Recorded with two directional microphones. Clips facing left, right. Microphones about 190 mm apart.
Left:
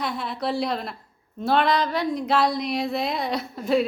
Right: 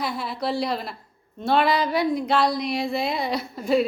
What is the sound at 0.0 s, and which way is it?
A woman's voice, centre (ahead or behind).